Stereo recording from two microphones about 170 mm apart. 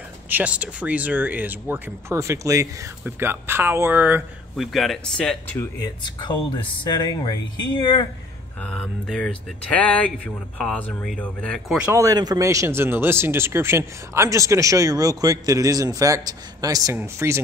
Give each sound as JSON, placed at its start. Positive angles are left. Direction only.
{"t": 0.3, "sound": "speech", "side_deg": -10}
{"t": 4.7, "sound": "speech", "side_deg": 0}
{"t": 5.8, "sound": "speech", "side_deg": 25}
{"t": 8.6, "sound": "speech", "side_deg": 5}
{"t": 11.9, "sound": "speech", "side_deg": -20}